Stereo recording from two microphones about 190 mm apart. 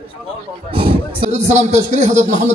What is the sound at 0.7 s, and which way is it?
Speech, 30° right (ahead or behind).